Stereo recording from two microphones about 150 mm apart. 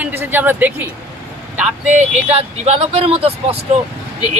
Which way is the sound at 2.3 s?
40° right (ahead or behind).